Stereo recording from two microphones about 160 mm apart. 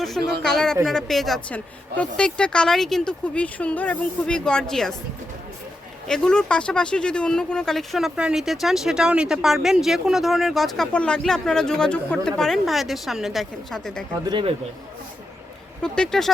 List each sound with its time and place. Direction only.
0.4 s speech: 5° left (ahead or behind)
6.1 s speech: 5° left (ahead or behind)
14.3 s speech: 30° right (ahead or behind)
15.8 s speech: 5° left (ahead or behind)